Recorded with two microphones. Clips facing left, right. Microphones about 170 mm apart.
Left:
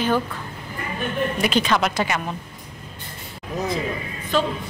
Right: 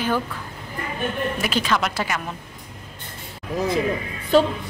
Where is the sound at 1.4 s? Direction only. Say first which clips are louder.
Left 4 dB; 5° right (ahead or behind).